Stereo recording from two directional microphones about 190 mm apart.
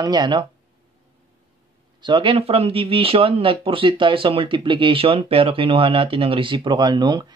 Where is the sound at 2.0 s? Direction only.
25° right (ahead or behind).